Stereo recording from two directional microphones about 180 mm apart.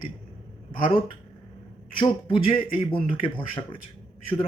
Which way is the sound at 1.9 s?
25° left (ahead or behind).